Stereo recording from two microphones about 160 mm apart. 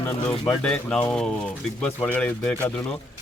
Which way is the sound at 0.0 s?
20° left (ahead or behind).